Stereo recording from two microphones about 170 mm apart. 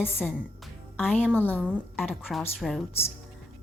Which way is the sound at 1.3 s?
10° left (ahead or behind).